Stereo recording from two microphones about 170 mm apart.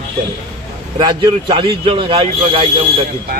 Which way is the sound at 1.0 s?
25° right (ahead or behind).